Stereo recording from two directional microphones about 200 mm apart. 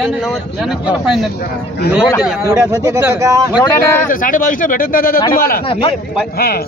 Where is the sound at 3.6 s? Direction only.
15° left (ahead or behind).